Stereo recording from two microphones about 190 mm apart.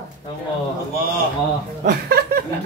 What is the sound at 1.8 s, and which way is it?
Speech, 50° right (ahead or behind).